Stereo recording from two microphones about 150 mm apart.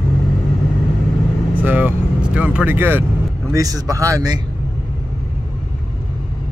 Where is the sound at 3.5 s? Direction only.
25° right (ahead or behind).